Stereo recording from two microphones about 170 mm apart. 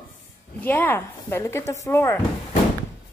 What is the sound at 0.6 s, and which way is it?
A woman's voice, 10° left (ahead or behind).